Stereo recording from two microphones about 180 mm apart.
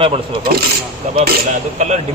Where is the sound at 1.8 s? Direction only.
40° right (ahead or behind).